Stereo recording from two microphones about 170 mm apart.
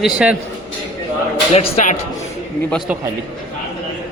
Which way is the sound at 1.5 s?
35° left (ahead or behind).